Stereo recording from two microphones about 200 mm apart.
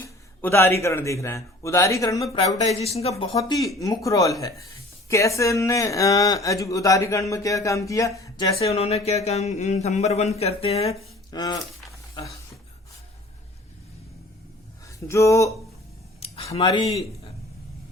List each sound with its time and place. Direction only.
0.0 s a man's voice: 10° left (ahead or behind)
2.3 s speech: 25° left (ahead or behind)
3.3 s speech: 15° left (ahead or behind)
8.5 s speech: 30° left (ahead or behind)
11.3 s a sound: 20° left (ahead or behind)
14.8 s speech: 15° left (ahead or behind)
16.2 s a sound: 30° left (ahead or behind)
16.5 s speech: 20° left (ahead or behind)